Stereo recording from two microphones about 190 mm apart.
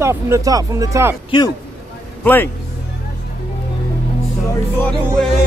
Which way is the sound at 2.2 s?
10° left (ahead or behind).